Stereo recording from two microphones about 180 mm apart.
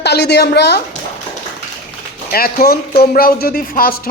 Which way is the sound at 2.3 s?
55° left (ahead or behind).